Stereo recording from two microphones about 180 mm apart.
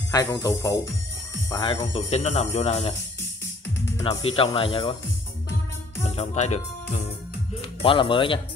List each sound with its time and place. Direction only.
0.1 s speech: 15° left (ahead or behind); by 3.0 s 35° left (ahead or behind)
4.1 s speech: 30° left (ahead or behind)
6.0 s speech: 35° left (ahead or behind)
7.8 s speech: 30° left (ahead or behind)